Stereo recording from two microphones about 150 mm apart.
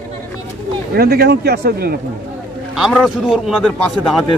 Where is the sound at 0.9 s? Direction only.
90° right.